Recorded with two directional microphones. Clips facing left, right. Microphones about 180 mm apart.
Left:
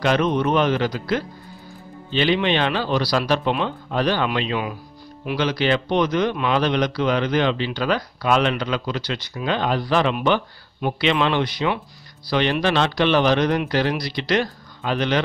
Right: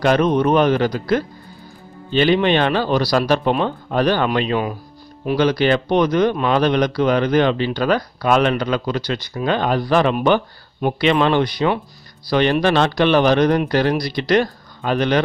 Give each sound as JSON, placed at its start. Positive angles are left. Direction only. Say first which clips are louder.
{"t": 0.0, "sound": "speech", "louder": "right 4 dB", "side_deg": -45}